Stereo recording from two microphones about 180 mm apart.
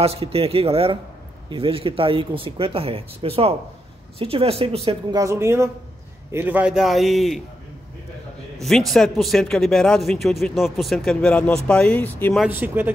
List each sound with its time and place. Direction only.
0.0 s speech: 35° right (ahead or behind)
5.1 s speech: 15° right (ahead or behind); by 7.4 s centre (ahead or behind)
8.6 s speech: centre (ahead or behind)
12.4 s speech: 10° right (ahead or behind)